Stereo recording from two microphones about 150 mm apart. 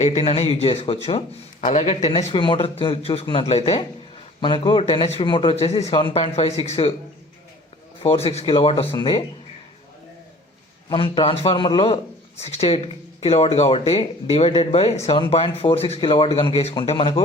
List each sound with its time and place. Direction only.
0.0 s speech: 45° left (ahead or behind)
1.6 s speech: 50° left (ahead or behind)
8.0 s speech: 40° left (ahead or behind)
10.8 s speech: 35° left (ahead or behind)